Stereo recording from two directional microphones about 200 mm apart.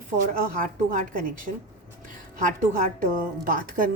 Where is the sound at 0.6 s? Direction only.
40° right (ahead or behind).